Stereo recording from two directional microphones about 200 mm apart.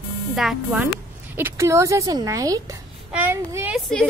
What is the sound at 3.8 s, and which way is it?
Speech, 5° left (ahead or behind).